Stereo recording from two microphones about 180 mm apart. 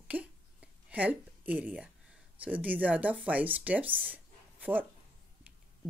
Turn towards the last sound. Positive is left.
turn(degrees=-10)  # may be behind; listen again after turning